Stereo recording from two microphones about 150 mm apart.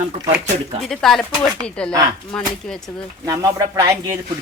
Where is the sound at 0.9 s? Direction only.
Centre (ahead or behind).